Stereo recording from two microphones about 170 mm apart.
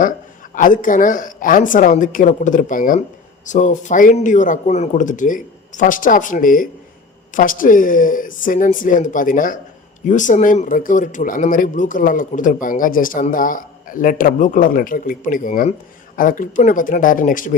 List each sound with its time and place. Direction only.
0.5 s speech: 50° left (ahead or behind)